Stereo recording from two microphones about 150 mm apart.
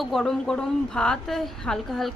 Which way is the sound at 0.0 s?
Centre (ahead or behind).